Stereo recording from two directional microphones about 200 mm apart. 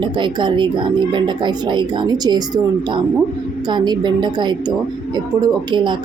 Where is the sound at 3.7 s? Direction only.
20° right (ahead or behind).